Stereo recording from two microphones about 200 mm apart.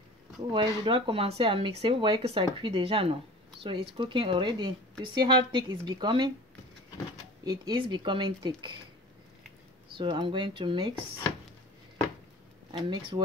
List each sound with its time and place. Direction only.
0.5 s speech: 25° right (ahead or behind)
7.4 s speech: 20° right (ahead or behind)
9.8 s speech: 25° right (ahead or behind)
12.7 s speech: 20° right (ahead or behind)